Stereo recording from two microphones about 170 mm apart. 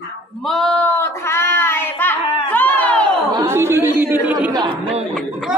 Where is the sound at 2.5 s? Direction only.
10° left (ahead or behind).